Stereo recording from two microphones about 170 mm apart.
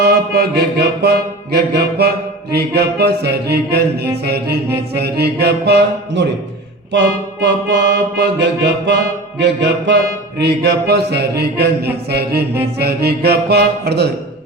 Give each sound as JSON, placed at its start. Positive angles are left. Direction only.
{"t": 0.0, "sound": "music", "side_deg": -70}
{"t": 6.9, "sound": "music", "side_deg": -90}